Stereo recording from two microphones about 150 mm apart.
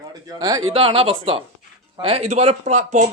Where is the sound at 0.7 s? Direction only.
40° right (ahead or behind).